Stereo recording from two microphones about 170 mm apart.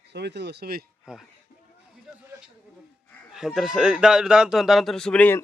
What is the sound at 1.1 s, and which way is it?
Speech, 5° right (ahead or behind).